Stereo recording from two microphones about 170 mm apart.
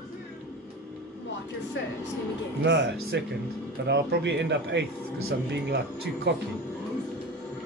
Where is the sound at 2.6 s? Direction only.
90° right.